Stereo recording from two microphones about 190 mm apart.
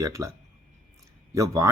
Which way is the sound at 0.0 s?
15° right (ahead or behind).